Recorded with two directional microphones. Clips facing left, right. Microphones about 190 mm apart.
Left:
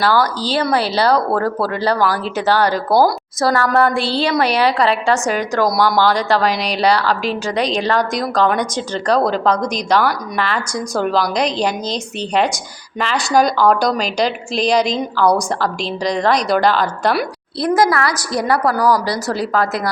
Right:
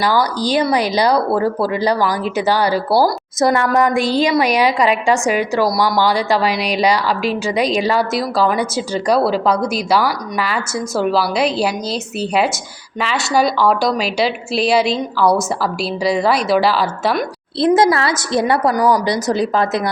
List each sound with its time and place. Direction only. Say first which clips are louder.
0.0 s speech: even; 15° right (ahead or behind)
3.4 s a woman's voice: right 1 dB; 20° right (ahead or behind); by 17.2 s 5° right (ahead or behind)
17.6 s a woman's voice: right 2 dB; 25° right (ahead or behind)